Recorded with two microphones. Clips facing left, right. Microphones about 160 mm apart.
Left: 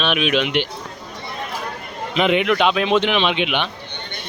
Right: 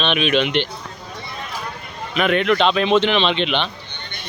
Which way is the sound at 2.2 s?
15° left (ahead or behind).